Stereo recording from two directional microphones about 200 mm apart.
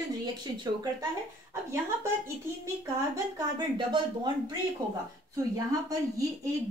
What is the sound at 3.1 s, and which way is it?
A woman's voice, 20° right (ahead or behind).